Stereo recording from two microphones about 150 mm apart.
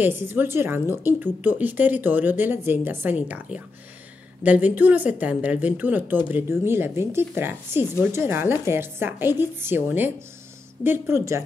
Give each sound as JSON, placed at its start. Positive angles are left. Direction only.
{"t": 0.0, "sound": "a woman's voice", "side_deg": -15}